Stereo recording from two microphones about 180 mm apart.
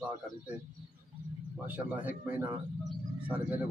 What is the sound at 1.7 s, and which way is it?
Speech, 10° right (ahead or behind).